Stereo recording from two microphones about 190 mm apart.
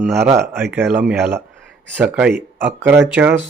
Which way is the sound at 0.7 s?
10° right (ahead or behind).